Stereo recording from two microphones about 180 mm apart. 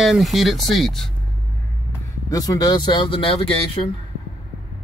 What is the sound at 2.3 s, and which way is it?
Speech, 20° left (ahead or behind).